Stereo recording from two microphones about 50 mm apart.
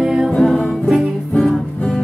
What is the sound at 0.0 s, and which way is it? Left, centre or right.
Music, centre.